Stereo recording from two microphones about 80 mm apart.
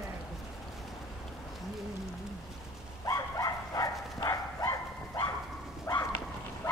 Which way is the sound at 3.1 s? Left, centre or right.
Left.